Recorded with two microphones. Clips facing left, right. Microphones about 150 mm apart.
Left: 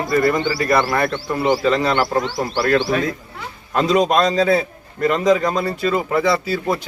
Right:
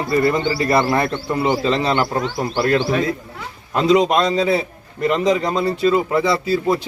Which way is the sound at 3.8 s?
20° right (ahead or behind).